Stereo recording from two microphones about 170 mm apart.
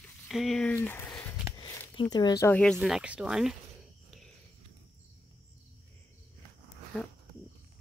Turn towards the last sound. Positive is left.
turn(degrees=5)  # may be behind; listen again after turning